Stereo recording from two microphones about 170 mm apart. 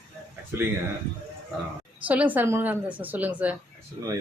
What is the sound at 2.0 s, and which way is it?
A woman's voice, 10° right (ahead or behind).